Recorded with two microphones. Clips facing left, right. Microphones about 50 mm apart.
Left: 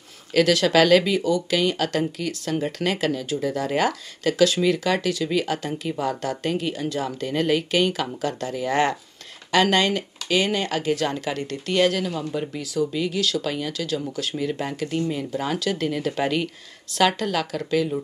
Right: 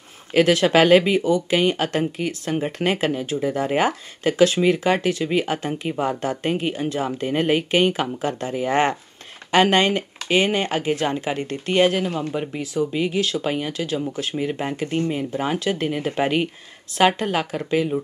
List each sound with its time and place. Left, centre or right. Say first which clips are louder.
0.3 s speech: right 2 dB; right